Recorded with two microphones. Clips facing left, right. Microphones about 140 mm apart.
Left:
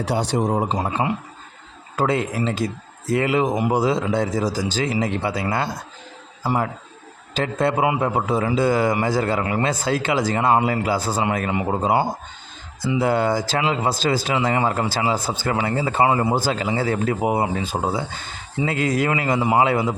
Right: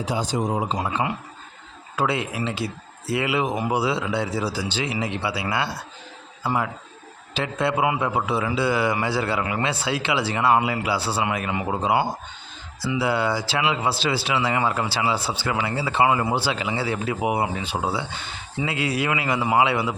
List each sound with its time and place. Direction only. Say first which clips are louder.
0.0 s a man's voice: left 3 dB; 70° left (ahead or behind)
0.3 s a man's voice: left 3 dB; 35° left (ahead or behind)
2.0 s speech: left 3 dB; 40° left (ahead or behind)
6.4 s a man's voice: left 2 dB; 30° left (ahead or behind)
7.3 s a man's voice: left 3 dB; 45° left (ahead or behind)
11.8 s a man's voice: even; 40° left (ahead or behind)
17.3 s a man's voice: left 3 dB; 35° left (ahead or behind)